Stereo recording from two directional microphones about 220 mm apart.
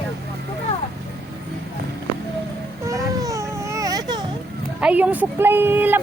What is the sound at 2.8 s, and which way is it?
Baby cry, 15° right (ahead or behind).